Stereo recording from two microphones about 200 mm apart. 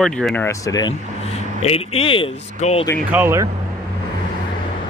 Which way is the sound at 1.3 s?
30° left (ahead or behind).